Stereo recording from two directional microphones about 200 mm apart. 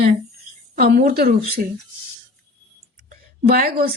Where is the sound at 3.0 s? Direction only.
45° right (ahead or behind).